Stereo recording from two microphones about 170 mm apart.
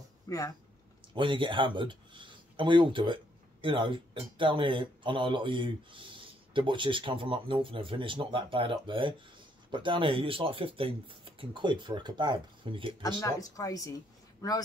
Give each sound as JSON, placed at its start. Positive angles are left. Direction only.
{"t": 1.1, "sound": "speech", "side_deg": -30}
{"t": 13.2, "sound": "speech", "side_deg": 20}